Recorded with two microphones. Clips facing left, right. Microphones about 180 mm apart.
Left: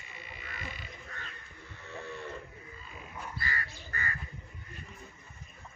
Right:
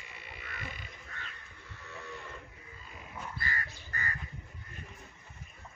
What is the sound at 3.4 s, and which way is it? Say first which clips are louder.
Crow: left 2 dB; 45° right (ahead or behind).